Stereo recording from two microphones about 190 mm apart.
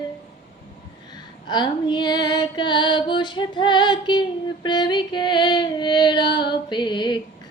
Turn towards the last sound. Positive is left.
turn(degrees=25)  # may be behind; listen again after turning